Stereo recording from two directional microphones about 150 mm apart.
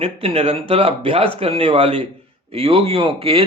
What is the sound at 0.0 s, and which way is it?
Speech, 40° right (ahead or behind).